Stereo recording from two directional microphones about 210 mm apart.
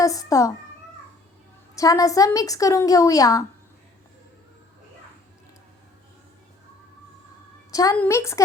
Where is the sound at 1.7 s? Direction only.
15° left (ahead or behind).